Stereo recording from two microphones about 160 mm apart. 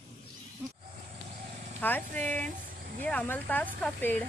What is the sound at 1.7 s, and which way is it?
Speech, 10° left (ahead or behind).